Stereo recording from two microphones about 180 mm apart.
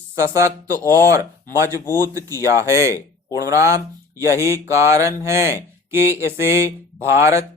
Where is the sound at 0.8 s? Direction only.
15° left (ahead or behind).